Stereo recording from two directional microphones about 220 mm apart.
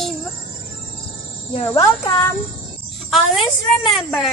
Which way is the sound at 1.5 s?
25° left (ahead or behind).